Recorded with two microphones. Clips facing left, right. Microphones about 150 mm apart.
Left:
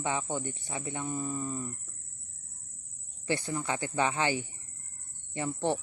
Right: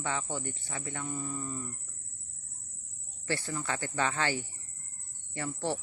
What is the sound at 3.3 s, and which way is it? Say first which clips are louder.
Speech: left 3 dB; 15° left (ahead or behind).